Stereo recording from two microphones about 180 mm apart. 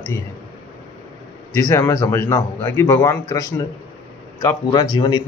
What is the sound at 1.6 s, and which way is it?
A man's voice, 15° left (ahead or behind).